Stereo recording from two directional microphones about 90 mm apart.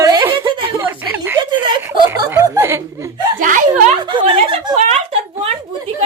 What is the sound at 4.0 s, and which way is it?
Speech, 60° right (ahead or behind).